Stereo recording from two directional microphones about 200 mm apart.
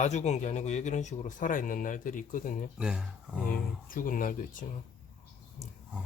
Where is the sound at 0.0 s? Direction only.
35° left (ahead or behind).